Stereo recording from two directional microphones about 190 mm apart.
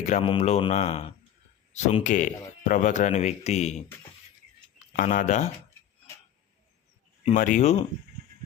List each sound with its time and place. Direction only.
0.0 s speech: 35° left (ahead or behind)
4.9 s speech: 40° left (ahead or behind)
7.3 s speech: 45° left (ahead or behind)